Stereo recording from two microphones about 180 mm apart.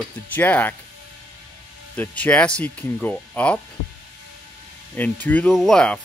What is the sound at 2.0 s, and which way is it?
Speech, 10° left (ahead or behind).